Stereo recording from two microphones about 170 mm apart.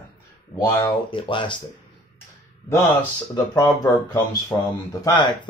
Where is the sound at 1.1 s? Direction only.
30° left (ahead or behind).